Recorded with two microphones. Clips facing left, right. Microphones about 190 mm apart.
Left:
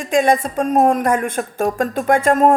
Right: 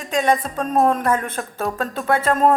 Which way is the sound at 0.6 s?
10° left (ahead or behind).